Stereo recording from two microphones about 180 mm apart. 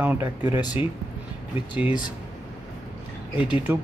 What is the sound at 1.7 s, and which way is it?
Speech, 10° right (ahead or behind).